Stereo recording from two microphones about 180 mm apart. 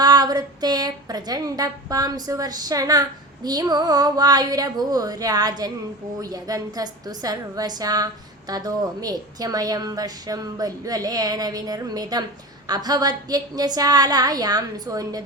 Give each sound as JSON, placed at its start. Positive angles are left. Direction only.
{"t": 0.0, "sound": "a woman's voice", "side_deg": -20}